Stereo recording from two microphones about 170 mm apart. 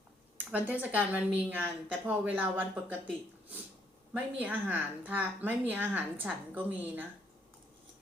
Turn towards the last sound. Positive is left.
turn(degrees=-10)  # may be behind; listen again after turning